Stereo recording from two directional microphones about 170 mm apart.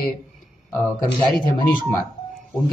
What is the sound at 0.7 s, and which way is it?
Speech, 20° left (ahead or behind).